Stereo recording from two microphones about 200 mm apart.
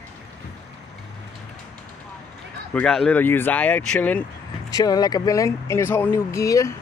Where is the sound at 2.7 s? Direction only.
5° left (ahead or behind).